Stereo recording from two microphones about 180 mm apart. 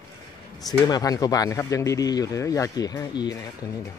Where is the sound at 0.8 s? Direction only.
20° left (ahead or behind).